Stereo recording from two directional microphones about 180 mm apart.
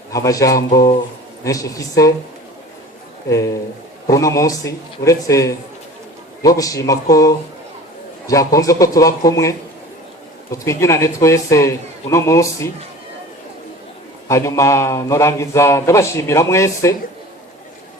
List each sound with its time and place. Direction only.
0.1 s speech: 20° left (ahead or behind)
3.2 s a man's voice: 15° left (ahead or behind)
8.5 s a man's voice: 20° left (ahead or behind)
14.3 s a man's voice: 15° left (ahead or behind)